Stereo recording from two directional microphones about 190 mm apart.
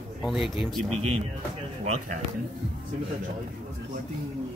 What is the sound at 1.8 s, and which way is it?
Speech, 40° right (ahead or behind).